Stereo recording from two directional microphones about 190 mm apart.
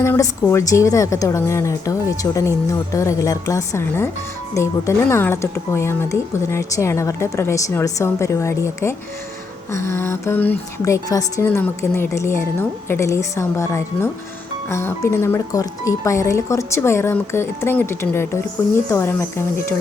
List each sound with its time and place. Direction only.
0.0 s speech: 15° left (ahead or behind)